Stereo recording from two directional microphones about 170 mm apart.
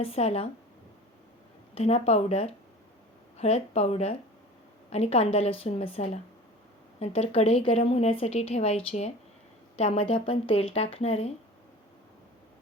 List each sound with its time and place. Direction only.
0.0 s speech: 35° left (ahead or behind)
1.7 s speech: 40° left (ahead or behind)